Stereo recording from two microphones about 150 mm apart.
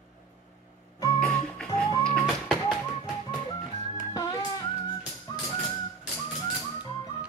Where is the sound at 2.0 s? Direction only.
5° left (ahead or behind).